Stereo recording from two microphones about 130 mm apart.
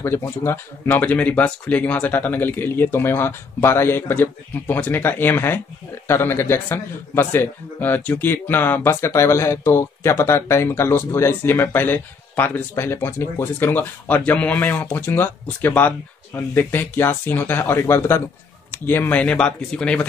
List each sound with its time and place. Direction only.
0.0 s a man's voice: 20° left (ahead or behind)